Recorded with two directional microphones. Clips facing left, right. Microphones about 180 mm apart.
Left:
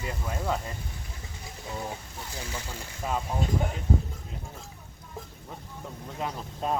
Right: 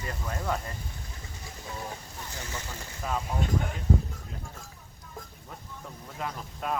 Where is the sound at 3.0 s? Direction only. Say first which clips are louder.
Left 1 dB; 20° left (ahead or behind).